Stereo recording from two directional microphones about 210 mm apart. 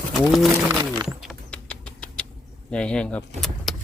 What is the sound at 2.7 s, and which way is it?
Speech, 5° left (ahead or behind).